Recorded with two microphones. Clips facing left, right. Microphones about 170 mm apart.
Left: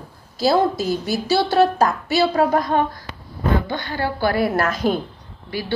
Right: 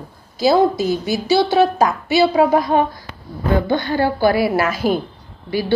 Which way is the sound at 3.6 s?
25° right (ahead or behind).